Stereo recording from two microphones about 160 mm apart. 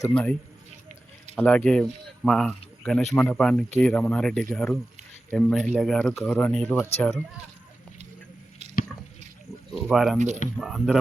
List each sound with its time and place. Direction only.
0.1 s speech: 5° left (ahead or behind)
1.4 s speech: 10° left (ahead or behind)
9.7 s speech: centre (ahead or behind)
10.2 s speech: 45° right (ahead or behind)
10.6 s speech: centre (ahead or behind)